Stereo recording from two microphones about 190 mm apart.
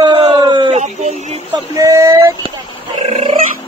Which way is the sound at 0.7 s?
35° right (ahead or behind).